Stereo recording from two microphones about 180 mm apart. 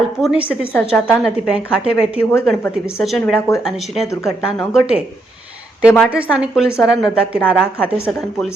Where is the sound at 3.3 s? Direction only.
15° left (ahead or behind).